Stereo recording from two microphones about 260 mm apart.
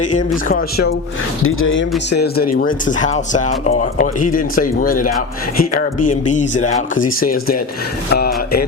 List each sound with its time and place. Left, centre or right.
0.4 s speech: left
1.5 s speech: left
6.3 s speech: left